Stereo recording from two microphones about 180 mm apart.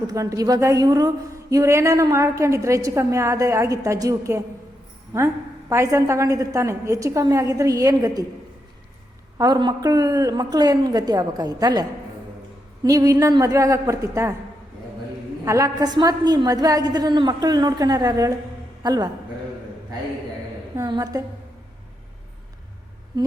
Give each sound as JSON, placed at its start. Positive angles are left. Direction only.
{"t": 0.1, "sound": "a woman's voice", "side_deg": -20}
{"t": 9.4, "sound": "a woman's voice", "side_deg": -25}
{"t": 15.4, "sound": "a woman's voice", "side_deg": -20}
{"t": 20.7, "sound": "a woman's voice", "side_deg": -20}